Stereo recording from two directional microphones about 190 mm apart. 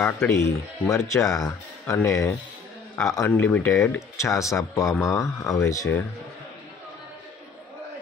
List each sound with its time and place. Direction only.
0.0 s speech: 10° left (ahead or behind)